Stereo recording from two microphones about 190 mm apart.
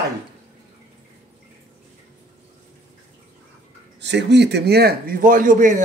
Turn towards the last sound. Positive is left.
turn(degrees=-40)  # may be behind; listen again after turning